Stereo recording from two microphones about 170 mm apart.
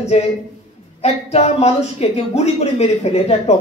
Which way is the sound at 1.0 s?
40° left (ahead or behind).